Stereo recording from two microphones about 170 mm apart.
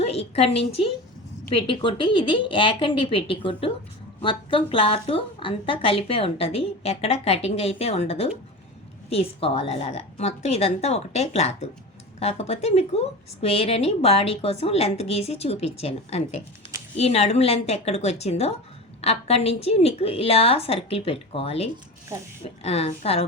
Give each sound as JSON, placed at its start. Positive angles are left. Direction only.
{"t": 0.0, "sound": "a woman's voice", "side_deg": 35}